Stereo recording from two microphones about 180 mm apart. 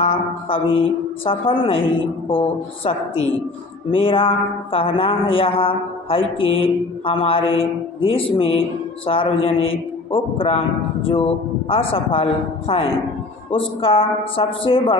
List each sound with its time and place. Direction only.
0.0 s mantra: 30° left (ahead or behind)
11.7 s mantra: 30° left (ahead or behind)
13.5 s a woman's voice: 30° left (ahead or behind)